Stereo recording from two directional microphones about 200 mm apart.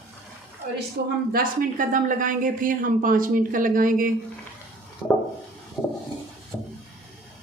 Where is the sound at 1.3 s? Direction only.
45° right (ahead or behind).